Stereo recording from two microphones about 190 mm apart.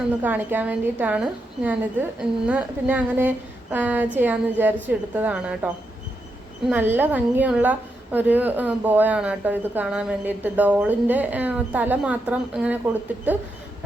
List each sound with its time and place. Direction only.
0.2 s a woman's voice: 10° right (ahead or behind)